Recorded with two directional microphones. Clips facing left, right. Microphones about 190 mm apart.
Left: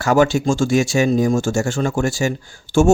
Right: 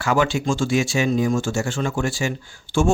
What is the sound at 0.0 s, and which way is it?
A man's voice, 45° left (ahead or behind).